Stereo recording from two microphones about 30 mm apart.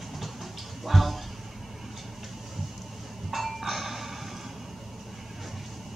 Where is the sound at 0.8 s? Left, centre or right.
Centre.